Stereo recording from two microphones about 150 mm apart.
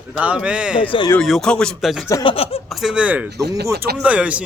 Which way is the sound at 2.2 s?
40° left (ahead or behind).